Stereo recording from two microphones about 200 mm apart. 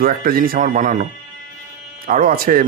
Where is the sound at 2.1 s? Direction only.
45° right (ahead or behind).